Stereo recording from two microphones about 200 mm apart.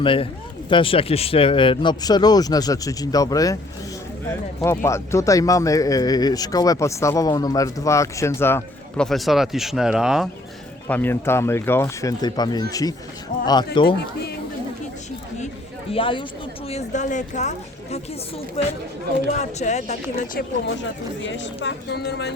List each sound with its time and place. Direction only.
0.0 s speech: 25° left (ahead or behind)
4.6 s speech: 15° left (ahead or behind); by 10.2 s 5° right (ahead or behind)
10.8 s speech: 10° left (ahead or behind)
15.9 s speech: 25° left (ahead or behind)
18.6 s speech: 30° left (ahead or behind)
21.2 s speech: 65° left (ahead or behind)